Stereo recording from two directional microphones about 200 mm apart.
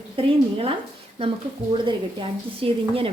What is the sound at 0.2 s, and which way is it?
Speech, 25° right (ahead or behind).